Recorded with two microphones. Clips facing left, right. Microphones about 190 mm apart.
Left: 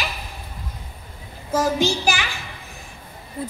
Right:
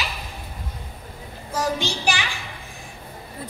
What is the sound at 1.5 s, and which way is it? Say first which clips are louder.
Child singing: left 5 dB; 40° left (ahead or behind).